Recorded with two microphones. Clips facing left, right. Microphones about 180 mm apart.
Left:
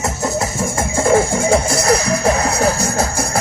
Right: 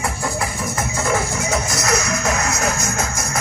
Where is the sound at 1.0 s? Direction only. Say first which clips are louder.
Left 9 dB; 30° left (ahead or behind).